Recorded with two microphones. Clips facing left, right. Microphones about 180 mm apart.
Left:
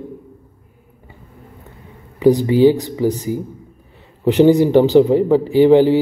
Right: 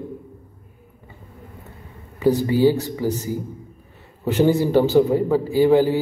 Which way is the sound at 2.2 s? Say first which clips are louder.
Left 5 dB; 15° left (ahead or behind).